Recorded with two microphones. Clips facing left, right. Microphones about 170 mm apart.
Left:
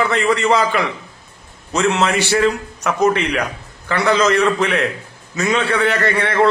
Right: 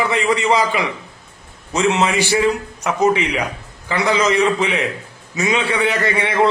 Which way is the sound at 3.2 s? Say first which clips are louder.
Left 1 dB; 65° left (ahead or behind).